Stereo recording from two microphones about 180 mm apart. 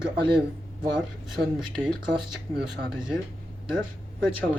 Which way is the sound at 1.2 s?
Centre (ahead or behind).